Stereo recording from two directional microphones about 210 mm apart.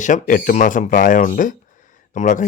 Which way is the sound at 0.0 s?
40° left (ahead or behind).